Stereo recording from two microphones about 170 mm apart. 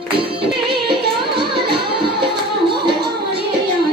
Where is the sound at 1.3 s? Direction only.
30° right (ahead or behind).